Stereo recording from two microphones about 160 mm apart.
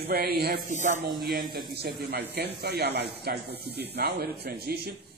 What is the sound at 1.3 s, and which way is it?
Speech, 65° right (ahead or behind).